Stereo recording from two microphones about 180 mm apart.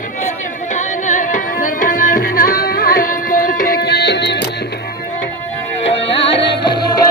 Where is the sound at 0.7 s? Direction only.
45° left (ahead or behind); by 4.5 s 70° left (ahead or behind).